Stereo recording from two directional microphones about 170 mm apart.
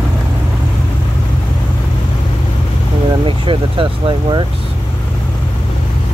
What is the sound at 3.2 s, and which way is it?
Vehicle, 30° right (ahead or behind).